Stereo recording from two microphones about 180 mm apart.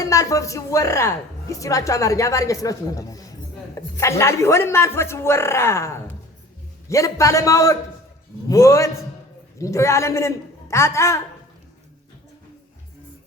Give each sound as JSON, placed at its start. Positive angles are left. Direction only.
{"t": 0.0, "sound": "a woman's voice", "side_deg": 20}